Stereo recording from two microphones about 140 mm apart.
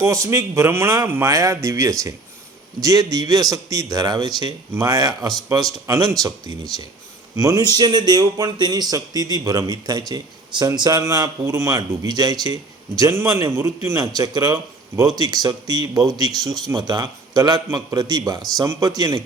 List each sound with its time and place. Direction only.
0.0 s speech: 20° right (ahead or behind)